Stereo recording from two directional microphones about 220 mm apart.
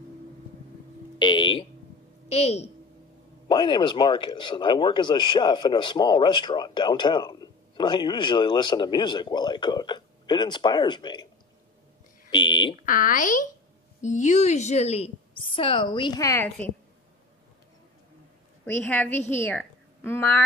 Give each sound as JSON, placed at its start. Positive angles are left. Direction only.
{"t": 1.2, "sound": "a sound", "side_deg": 20}
{"t": 2.2, "sound": "speech", "side_deg": 30}
{"t": 12.3, "sound": "speech", "side_deg": 20}
{"t": 12.8, "sound": "speech", "side_deg": 40}
{"t": 18.7, "sound": "a woman's voice", "side_deg": 10}